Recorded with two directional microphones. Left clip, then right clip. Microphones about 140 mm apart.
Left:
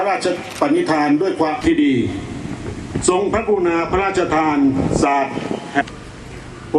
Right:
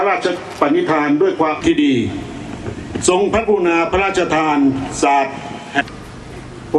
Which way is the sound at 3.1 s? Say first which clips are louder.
Right 2 dB; 35° right (ahead or behind).